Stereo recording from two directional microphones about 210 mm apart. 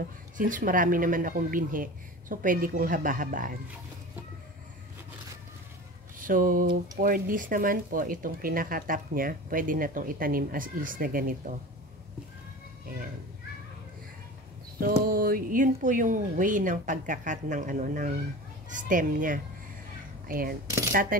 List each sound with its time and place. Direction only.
0.4 s speech: 40° right (ahead or behind)
6.1 s speech: 40° right (ahead or behind)
14.8 s speech: 45° right (ahead or behind)
20.9 s a sound: 40° right (ahead or behind)